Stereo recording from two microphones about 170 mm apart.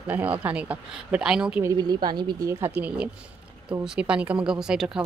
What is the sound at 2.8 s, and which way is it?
Speech, 10° right (ahead or behind).